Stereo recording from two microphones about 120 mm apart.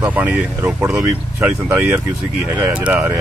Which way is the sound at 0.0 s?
10° right (ahead or behind).